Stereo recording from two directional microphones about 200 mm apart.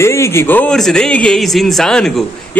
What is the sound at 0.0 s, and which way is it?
A man's voice, 15° left (ahead or behind).